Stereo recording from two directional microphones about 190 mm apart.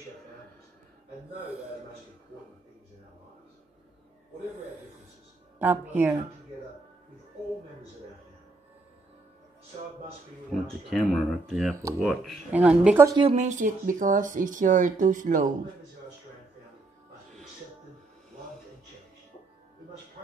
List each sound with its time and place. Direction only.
5.6 s speech: 10° right (ahead or behind)
10.5 s speech: 5° left (ahead or behind)
13.1 s speech: 30° right (ahead or behind)